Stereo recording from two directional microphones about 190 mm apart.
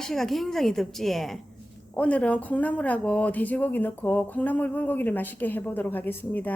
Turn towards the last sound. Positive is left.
turn(degrees=10)  # may be behind; listen again after turning